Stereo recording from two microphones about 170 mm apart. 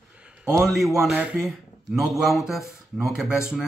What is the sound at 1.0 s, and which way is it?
Speech, 5° right (ahead or behind).